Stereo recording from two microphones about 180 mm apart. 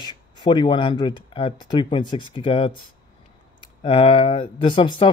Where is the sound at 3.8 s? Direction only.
30° left (ahead or behind).